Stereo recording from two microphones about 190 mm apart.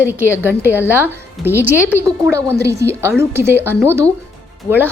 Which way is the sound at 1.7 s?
10° left (ahead or behind).